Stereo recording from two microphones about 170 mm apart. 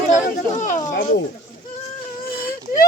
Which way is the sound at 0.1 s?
45° left (ahead or behind).